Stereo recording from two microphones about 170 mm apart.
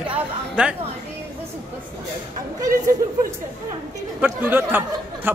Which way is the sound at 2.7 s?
50° right (ahead or behind).